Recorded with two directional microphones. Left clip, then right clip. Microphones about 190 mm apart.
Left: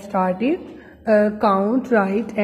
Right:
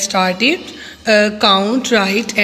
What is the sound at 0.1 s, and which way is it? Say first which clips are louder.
Speech: right 5 dB; 15° right (ahead or behind).